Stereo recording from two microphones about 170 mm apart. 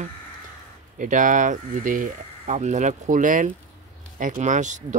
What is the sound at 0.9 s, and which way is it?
Speech, 50° right (ahead or behind).